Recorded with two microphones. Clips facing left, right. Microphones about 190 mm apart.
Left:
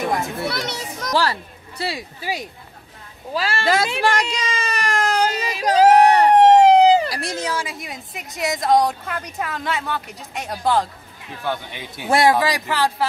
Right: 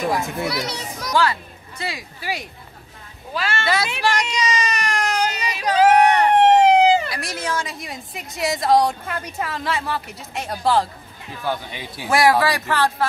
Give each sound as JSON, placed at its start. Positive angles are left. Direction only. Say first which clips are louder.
{"t": 0.5, "sound": "a child's voice", "louder": "even", "side_deg": 0}
{"t": 1.1, "sound": "speech", "louder": "right 1 dB", "side_deg": 35}
{"t": 3.3, "sound": "speech", "louder": "left 2 dB", "side_deg": 35}
{"t": 3.7, "sound": "a sound", "louder": "left 3 dB", "side_deg": 45}
{"t": 7.4, "sound": "speech", "louder": "even", "side_deg": 10}
{"t": 12.1, "sound": "speech", "louder": "even", "side_deg": 25}